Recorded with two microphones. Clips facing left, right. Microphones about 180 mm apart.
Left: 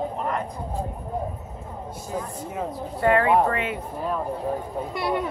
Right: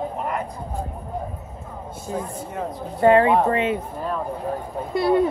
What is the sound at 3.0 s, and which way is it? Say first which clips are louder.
Speech: right 4 dB; 25° right (ahead or behind).